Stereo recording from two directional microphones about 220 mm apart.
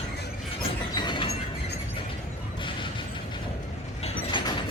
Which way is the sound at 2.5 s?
20° left (ahead or behind).